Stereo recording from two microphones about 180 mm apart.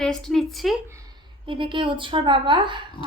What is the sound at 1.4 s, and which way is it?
A woman's voice, 30° right (ahead or behind).